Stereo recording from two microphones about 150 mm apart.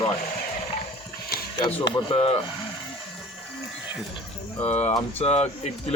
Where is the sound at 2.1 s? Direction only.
40° left (ahead or behind).